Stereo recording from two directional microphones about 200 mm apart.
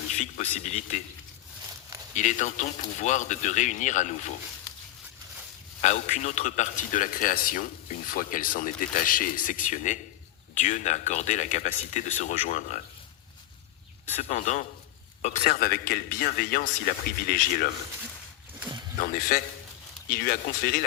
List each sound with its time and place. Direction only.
0.2 s speech: 35° left (ahead or behind)
2.1 s speech: 35° left (ahead or behind)
5.8 s a man's voice: 35° left (ahead or behind)
14.2 s a man's voice: 35° left (ahead or behind)
18.9 s a man's voice: 45° left (ahead or behind)